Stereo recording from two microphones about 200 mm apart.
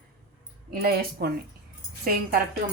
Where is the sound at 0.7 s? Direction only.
50° right (ahead or behind).